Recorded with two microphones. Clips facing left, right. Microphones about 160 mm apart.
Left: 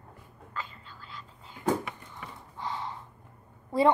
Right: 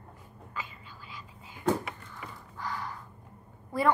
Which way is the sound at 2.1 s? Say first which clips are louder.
Even; 20° left (ahead or behind).